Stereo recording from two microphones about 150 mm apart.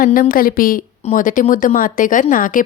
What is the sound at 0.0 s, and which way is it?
A woman's voice, 70° left (ahead or behind).